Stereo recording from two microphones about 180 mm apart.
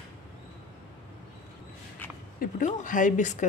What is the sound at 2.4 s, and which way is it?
Speech, 45° left (ahead or behind).